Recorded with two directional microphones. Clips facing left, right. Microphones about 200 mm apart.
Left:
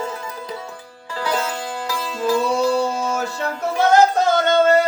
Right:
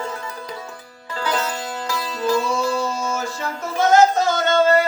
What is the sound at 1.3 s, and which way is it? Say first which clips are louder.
Music: left 1 dB; 10° left (ahead or behind).